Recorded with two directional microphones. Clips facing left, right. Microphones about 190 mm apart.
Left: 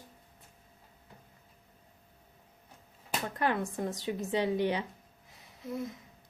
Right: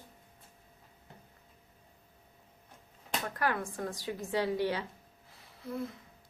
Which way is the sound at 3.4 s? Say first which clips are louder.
Left 3 dB; 20° left (ahead or behind).